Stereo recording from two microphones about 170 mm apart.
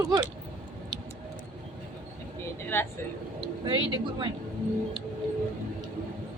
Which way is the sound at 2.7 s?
10° left (ahead or behind).